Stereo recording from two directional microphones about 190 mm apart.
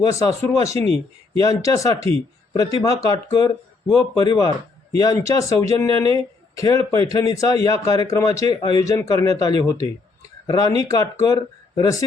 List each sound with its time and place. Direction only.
0.0 s speech: 20° left (ahead or behind)